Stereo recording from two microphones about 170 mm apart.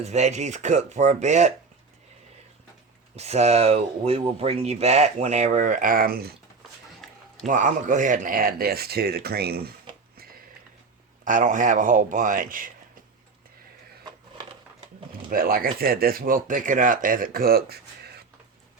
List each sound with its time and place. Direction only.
0.0 s speech: 40° right (ahead or behind)
3.2 s speech: 40° right (ahead or behind); by 6.3 s 60° right (ahead or behind)
7.4 s speech: 50° right (ahead or behind); by 9.7 s 65° right (ahead or behind)
10.2 s sniff: 60° right (ahead or behind)
11.3 s speech: 50° right (ahead or behind)
15.3 s speech: 55° right (ahead or behind)